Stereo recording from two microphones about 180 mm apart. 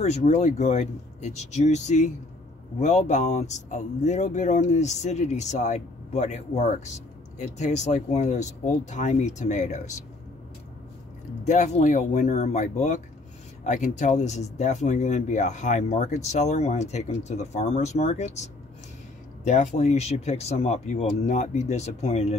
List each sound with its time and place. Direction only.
0.0 s speech: 40° left (ahead or behind)
11.4 s speech: 40° left (ahead or behind)